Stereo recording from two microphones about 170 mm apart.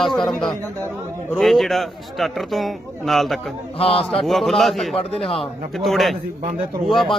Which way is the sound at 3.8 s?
35° left (ahead or behind).